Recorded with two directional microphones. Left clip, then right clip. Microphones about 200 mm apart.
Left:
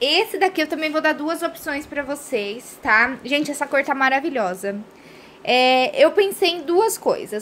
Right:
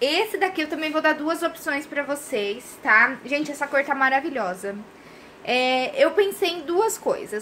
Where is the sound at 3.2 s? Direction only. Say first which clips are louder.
Left 4 dB; 45° left (ahead or behind).